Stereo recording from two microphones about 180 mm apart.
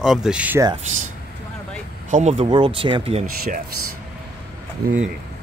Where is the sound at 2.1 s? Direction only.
40° right (ahead or behind).